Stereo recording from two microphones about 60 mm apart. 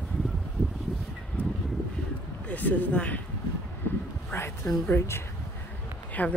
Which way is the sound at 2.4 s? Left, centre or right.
Left.